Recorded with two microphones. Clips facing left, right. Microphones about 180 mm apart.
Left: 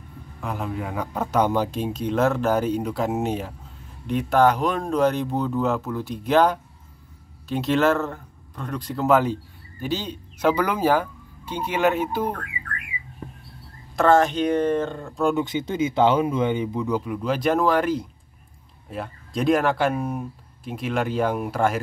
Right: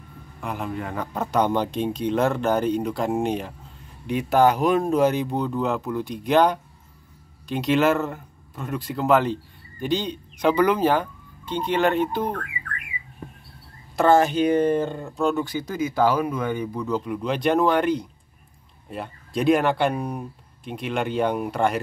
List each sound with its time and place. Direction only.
0.4 s speech: centre (ahead or behind)
13.9 s speech: 5° right (ahead or behind)
15.3 s speech: 20° left (ahead or behind)
17.0 s speech: 5° left (ahead or behind)